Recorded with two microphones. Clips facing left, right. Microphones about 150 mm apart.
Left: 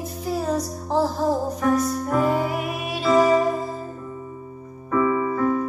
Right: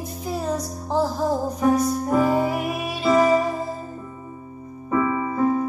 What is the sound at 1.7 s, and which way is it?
Music, centre (ahead or behind).